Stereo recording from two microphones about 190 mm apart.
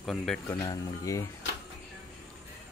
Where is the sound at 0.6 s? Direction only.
15° left (ahead or behind).